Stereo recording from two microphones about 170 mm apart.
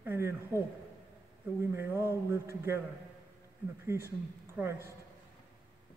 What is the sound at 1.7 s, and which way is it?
Speech, 15° right (ahead or behind).